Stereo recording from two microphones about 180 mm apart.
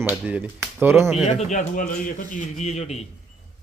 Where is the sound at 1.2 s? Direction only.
40° left (ahead or behind).